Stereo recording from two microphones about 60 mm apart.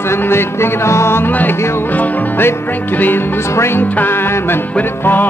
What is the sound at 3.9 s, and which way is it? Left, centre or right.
Music, left.